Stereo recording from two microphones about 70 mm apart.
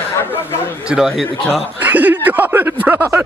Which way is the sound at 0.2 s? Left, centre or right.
Left.